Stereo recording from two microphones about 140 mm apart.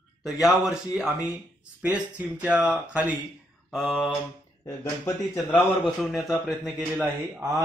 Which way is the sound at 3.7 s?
Centre (ahead or behind).